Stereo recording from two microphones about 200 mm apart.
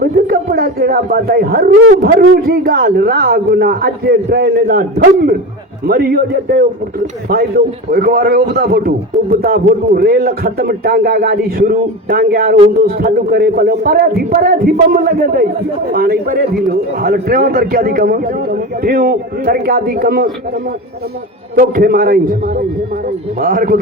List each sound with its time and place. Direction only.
0.5 s a man's voice: 50° right (ahead or behind)
7.9 s a man's voice: 50° right (ahead or behind)
21.6 s a man's voice: 45° right (ahead or behind)